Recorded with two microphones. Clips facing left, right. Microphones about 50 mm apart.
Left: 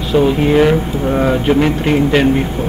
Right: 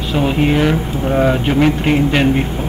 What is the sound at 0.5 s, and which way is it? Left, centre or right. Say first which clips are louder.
Speech: left 4 dB; centre.